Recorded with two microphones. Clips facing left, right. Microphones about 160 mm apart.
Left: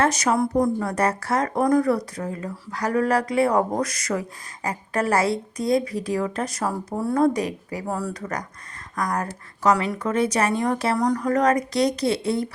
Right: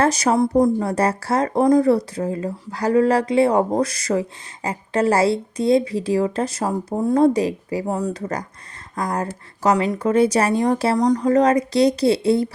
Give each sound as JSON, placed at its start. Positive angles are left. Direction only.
{"t": 0.0, "sound": "speech", "side_deg": -30}
{"t": 10.9, "sound": "speech", "side_deg": -20}